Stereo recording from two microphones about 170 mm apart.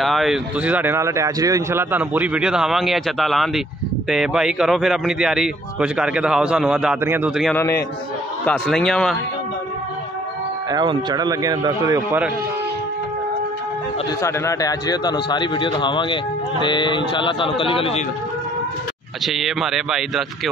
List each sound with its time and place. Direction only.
0.0 s a man's voice: centre (ahead or behind)
10.7 s speech: 25° right (ahead or behind)
14.2 s a man's voice: 15° left (ahead or behind); by 18.0 s 35° left (ahead or behind)
19.2 s a man's voice: centre (ahead or behind)